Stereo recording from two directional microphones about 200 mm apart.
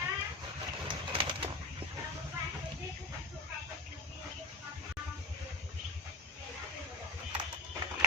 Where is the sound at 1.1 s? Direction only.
25° right (ahead or behind).